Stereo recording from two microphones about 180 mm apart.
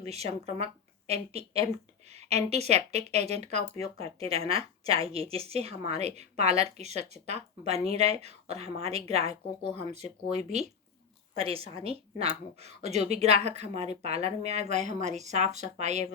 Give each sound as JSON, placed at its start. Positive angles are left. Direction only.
{"t": 0.0, "sound": "speech", "side_deg": -35}